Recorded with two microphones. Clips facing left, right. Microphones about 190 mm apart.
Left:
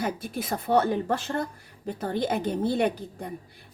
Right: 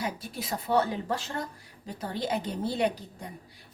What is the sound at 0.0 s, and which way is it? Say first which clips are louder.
A woman's voice: left 4 dB; 55° left (ahead or behind).